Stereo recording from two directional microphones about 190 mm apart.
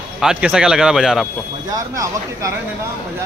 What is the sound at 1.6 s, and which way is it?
Speech, 15° right (ahead or behind).